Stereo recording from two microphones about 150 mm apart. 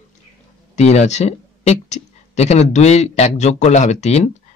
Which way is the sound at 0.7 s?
45° left (ahead or behind).